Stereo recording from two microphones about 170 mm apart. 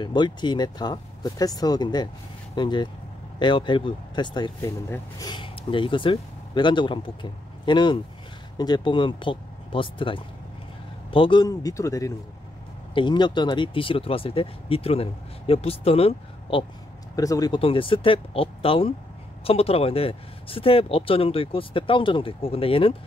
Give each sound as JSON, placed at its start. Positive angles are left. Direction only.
{"t": 0.0, "sound": "speech", "side_deg": 25}
{"t": 5.3, "sound": "speech", "side_deg": 30}
{"t": 17.1, "sound": "speech", "side_deg": 20}
{"t": 17.6, "sound": "speech", "side_deg": 30}